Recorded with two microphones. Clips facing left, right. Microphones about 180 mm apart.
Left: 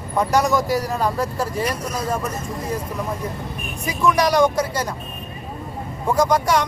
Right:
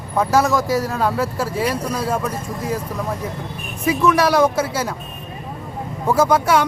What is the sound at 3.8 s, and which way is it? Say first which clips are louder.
Speech: right 3 dB; centre (ahead or behind).